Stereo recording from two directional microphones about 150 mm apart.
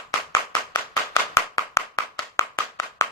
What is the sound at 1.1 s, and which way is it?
Clapping, 20° left (ahead or behind).